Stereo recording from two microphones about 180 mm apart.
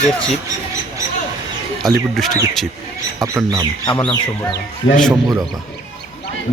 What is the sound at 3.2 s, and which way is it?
Speech, 15° right (ahead or behind).